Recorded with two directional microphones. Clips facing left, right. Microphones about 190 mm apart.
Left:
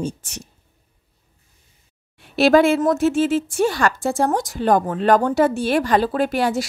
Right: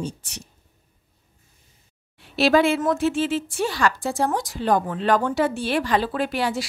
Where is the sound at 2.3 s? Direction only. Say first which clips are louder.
Left 4 dB; 45° left (ahead or behind).